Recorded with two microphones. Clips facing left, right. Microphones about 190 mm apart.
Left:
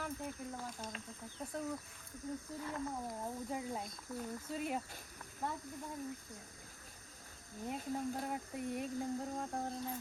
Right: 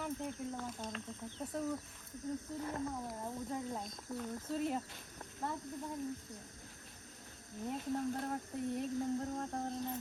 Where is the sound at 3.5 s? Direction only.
5° left (ahead or behind).